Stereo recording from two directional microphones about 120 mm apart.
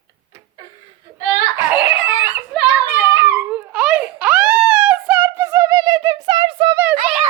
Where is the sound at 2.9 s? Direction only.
20° right (ahead or behind); by 6.7 s 40° right (ahead or behind).